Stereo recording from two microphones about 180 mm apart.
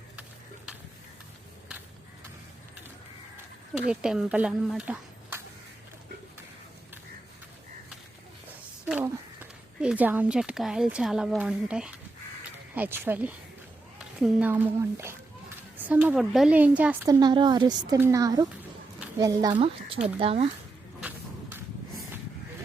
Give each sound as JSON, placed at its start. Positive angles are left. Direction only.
{"t": 0.2, "sound": "a sound", "side_deg": -5}
{"t": 3.8, "sound": "speech", "side_deg": -5}
{"t": 8.9, "sound": "a woman's voice", "side_deg": -10}
{"t": 17.1, "sound": "a woman's voice", "side_deg": -25}